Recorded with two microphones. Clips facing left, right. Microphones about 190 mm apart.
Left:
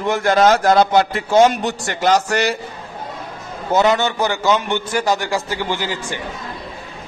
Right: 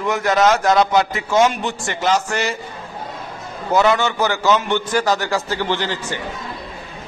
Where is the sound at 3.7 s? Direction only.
25° left (ahead or behind).